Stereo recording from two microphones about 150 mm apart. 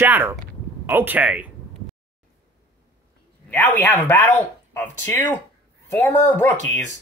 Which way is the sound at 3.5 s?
10° left (ahead or behind).